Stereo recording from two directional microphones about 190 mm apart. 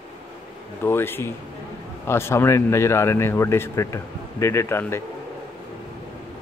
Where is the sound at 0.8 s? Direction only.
10° left (ahead or behind).